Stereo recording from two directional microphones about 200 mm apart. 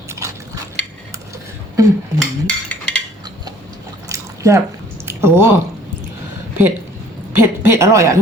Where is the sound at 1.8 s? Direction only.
15° right (ahead or behind).